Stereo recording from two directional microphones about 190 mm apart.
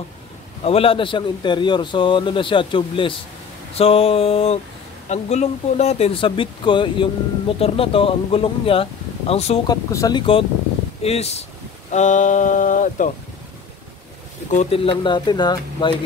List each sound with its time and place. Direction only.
0.7 s speech: 30° left (ahead or behind)
3.7 s a sound: 30° left (ahead or behind)
5.1 s speech: 35° left (ahead or behind)
9.7 s speech: 20° left (ahead or behind)
11.0 s a sound: 35° left (ahead or behind)
11.9 s speech: 40° left (ahead or behind)
14.5 s speech: 35° left (ahead or behind)